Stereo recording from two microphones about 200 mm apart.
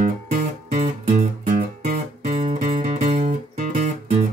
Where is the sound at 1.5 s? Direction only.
40° right (ahead or behind).